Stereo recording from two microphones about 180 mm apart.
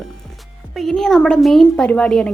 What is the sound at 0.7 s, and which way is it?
A woman's voice, centre (ahead or behind).